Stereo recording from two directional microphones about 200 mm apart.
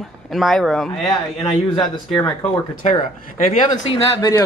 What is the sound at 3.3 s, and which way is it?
Speech, 40° left (ahead or behind).